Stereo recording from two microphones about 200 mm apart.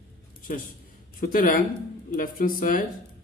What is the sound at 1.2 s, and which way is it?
Speech, 45° left (ahead or behind).